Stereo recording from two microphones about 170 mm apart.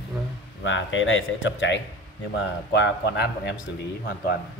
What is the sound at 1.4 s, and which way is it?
A man's voice, 90° left.